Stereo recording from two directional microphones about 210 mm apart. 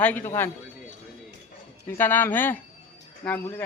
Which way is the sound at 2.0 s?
10° left (ahead or behind).